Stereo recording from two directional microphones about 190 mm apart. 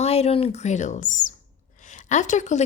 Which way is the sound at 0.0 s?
35° left (ahead or behind).